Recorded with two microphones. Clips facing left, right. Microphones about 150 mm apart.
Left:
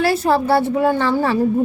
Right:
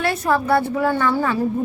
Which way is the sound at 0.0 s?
30° left (ahead or behind).